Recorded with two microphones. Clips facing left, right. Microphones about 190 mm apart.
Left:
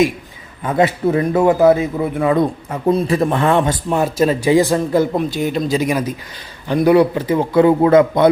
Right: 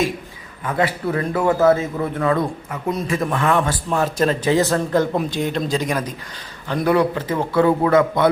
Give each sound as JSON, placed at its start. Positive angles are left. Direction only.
{"t": 0.6, "sound": "a man's voice", "side_deg": 25}
{"t": 2.6, "sound": "a man's voice", "side_deg": 35}